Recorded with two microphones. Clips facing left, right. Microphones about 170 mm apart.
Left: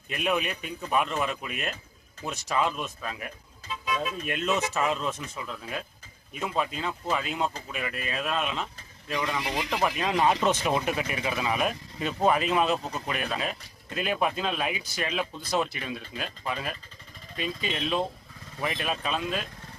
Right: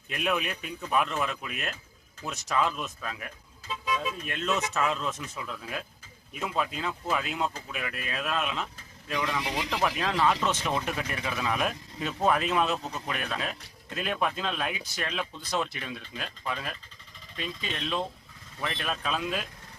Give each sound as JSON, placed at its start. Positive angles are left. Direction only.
{"t": 0.1, "sound": "speech", "side_deg": 0}
{"t": 3.9, "sound": "speech", "side_deg": 15}
{"t": 4.7, "sound": "speech", "side_deg": 5}
{"t": 10.2, "sound": "speech", "side_deg": 20}